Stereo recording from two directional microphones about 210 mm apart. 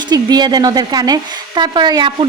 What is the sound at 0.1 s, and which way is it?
Speech, 20° right (ahead or behind).